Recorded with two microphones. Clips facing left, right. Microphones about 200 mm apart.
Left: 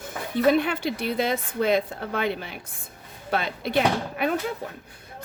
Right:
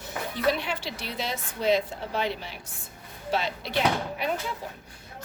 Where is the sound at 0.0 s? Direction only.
55° left (ahead or behind).